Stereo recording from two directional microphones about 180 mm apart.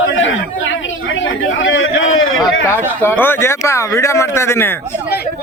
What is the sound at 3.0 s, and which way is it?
Speech, 10° left (ahead or behind).